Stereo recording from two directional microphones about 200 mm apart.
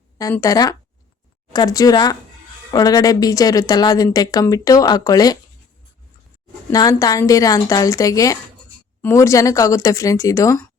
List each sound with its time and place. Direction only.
0.2 s speech: 15° left (ahead or behind)
6.7 s speech: 15° left (ahead or behind)